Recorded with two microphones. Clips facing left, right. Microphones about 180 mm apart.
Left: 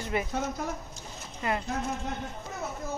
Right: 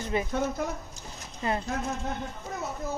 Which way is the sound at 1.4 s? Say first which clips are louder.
Right 1 dB; 30° right (ahead or behind).